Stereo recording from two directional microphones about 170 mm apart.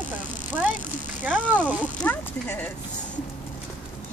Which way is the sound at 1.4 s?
5° left (ahead or behind).